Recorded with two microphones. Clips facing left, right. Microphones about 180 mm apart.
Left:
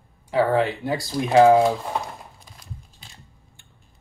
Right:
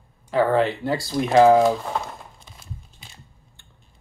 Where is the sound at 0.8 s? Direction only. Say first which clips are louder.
Right 2 dB; 20° left (ahead or behind).